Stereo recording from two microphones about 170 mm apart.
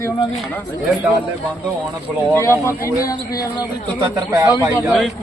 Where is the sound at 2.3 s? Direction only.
15° left (ahead or behind).